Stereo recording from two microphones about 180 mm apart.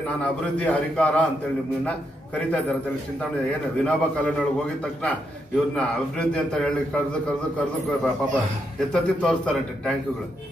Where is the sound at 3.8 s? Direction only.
5° left (ahead or behind).